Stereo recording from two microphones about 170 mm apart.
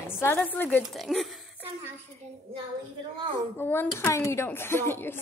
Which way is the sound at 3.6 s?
15° left (ahead or behind).